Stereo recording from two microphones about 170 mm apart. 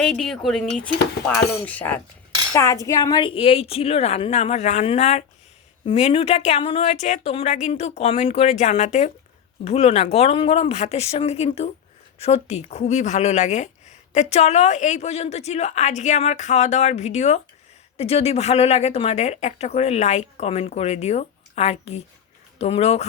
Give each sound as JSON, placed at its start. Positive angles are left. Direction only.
{"t": 0.0, "sound": "speech", "side_deg": 5}